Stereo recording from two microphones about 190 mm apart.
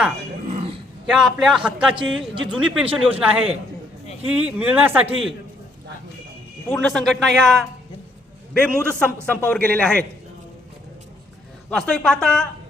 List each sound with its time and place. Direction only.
0.5 s a sound: 30° right (ahead or behind)
1.0 s a man's voice: centre (ahead or behind)
6.7 s a man's voice: centre (ahead or behind)
11.7 s a man's voice: 5° left (ahead or behind)